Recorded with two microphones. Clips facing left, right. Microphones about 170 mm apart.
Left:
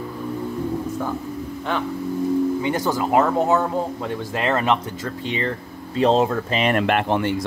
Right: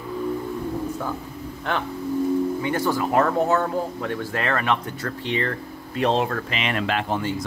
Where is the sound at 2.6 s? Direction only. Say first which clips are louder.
Left 1 dB; 20° left (ahead or behind).